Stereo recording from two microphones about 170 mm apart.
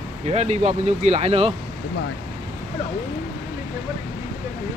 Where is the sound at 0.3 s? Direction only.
40° right (ahead or behind).